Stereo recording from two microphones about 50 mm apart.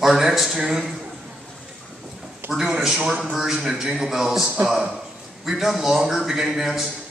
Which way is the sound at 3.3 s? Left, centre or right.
Centre.